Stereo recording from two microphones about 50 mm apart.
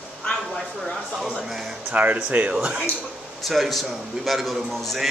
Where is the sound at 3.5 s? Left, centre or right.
Centre.